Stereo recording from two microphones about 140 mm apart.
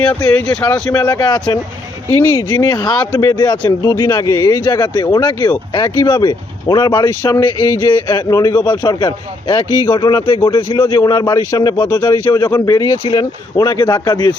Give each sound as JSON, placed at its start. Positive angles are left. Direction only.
{"t": 0.3, "sound": "speech", "side_deg": 5}
{"t": 0.9, "sound": "a man's voice", "side_deg": 25}